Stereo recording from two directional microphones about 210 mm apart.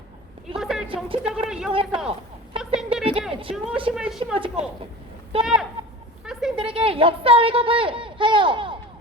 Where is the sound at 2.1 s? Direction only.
25° right (ahead or behind).